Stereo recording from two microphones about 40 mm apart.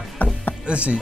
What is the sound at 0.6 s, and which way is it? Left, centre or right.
Speech, right.